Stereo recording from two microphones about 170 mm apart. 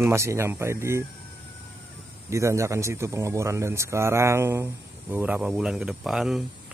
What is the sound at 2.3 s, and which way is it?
Speech, 15° right (ahead or behind).